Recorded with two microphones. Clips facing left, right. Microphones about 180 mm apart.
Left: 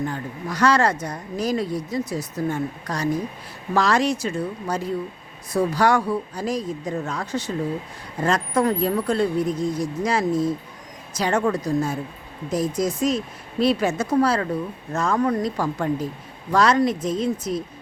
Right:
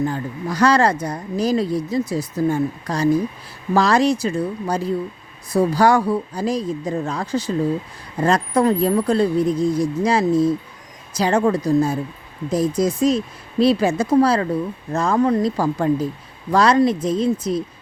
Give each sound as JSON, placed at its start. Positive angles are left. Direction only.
{"t": 0.0, "sound": "speech", "side_deg": -35}